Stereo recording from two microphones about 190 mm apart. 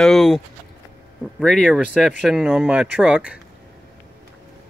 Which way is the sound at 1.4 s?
5° left (ahead or behind).